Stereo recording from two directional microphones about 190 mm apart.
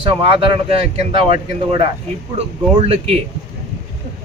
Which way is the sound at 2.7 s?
30° right (ahead or behind).